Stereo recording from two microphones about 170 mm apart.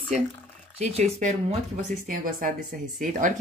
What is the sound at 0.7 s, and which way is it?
Speech, 40° right (ahead or behind).